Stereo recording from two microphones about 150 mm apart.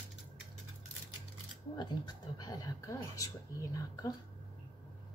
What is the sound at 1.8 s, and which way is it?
Speech, 30° left (ahead or behind).